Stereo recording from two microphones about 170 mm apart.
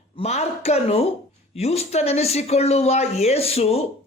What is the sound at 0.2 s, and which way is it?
Speech, 40° left (ahead or behind).